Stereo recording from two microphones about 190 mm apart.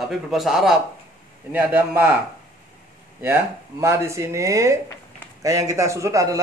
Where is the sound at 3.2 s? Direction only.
15° right (ahead or behind).